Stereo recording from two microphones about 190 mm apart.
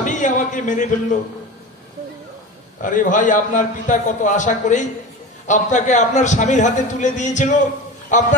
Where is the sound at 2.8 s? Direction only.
45° left (ahead or behind).